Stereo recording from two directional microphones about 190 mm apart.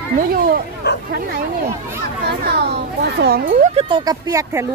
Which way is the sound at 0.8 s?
60° left (ahead or behind).